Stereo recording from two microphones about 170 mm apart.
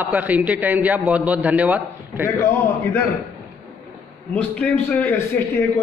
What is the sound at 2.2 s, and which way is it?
Speech, 15° left (ahead or behind).